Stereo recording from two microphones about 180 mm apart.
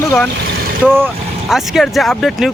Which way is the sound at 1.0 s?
Centre (ahead or behind).